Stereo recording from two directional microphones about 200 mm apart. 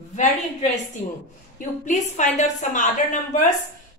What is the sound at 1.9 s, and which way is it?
A woman's voice, 35° left (ahead or behind).